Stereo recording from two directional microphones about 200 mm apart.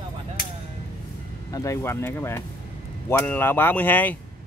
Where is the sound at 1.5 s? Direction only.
15° left (ahead or behind).